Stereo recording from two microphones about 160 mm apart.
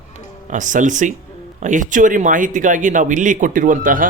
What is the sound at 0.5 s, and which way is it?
Speech, 55° right (ahead or behind).